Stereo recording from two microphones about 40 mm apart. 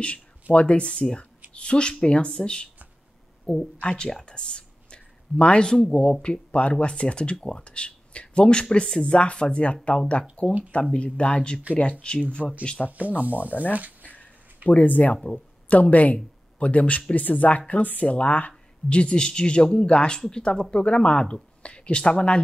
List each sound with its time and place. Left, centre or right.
0.0 s speech: left
5.4 s speech: left
5.9 s speech: centre
12.9 s speech: right
13.4 s speech: left
18.9 s speech: left